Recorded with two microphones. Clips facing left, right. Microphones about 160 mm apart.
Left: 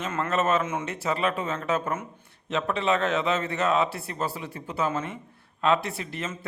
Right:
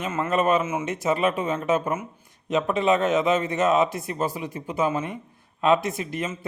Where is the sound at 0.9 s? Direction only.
15° right (ahead or behind).